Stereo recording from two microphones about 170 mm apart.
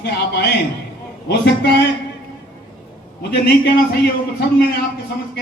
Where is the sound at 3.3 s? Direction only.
75° left (ahead or behind).